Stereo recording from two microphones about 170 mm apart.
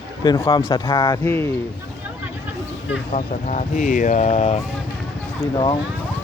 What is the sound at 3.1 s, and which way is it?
Speech, 45° left (ahead or behind).